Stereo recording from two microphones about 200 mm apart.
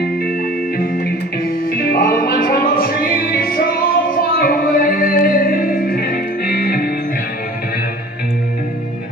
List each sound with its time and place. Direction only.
1.7 s music: 50° left (ahead or behind)